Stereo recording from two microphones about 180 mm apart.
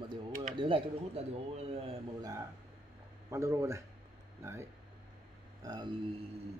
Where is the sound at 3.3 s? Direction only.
15° right (ahead or behind).